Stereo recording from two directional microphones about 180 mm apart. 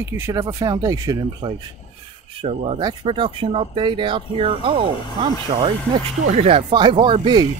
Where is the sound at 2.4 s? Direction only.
30° right (ahead or behind).